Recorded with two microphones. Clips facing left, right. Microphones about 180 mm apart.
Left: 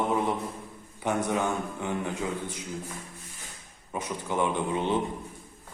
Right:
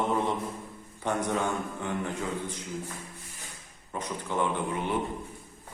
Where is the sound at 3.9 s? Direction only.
10° left (ahead or behind).